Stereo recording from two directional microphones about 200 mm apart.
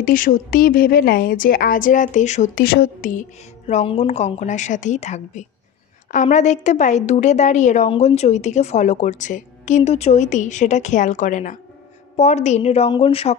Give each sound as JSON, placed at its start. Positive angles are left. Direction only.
{"t": 0.0, "sound": "a woman's voice", "side_deg": 40}